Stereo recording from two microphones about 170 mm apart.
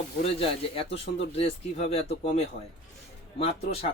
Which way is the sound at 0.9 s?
35° left (ahead or behind).